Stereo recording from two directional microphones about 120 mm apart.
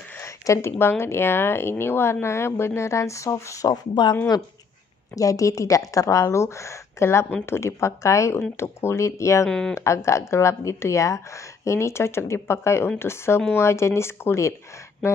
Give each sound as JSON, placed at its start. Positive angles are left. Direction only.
{"t": 0.2, "sound": "speech", "side_deg": 20}
{"t": 9.5, "sound": "speech", "side_deg": 5}
{"t": 9.8, "sound": "speech", "side_deg": 25}